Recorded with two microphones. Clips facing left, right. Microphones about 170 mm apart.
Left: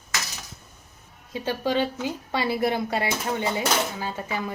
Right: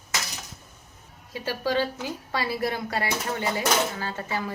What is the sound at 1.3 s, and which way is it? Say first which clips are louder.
A woman's voice: left 2 dB; 20° left (ahead or behind).